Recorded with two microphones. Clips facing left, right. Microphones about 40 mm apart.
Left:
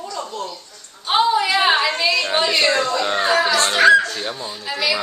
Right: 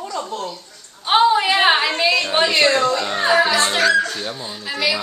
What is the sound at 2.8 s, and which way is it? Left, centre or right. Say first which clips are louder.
Speech: right 2 dB; centre.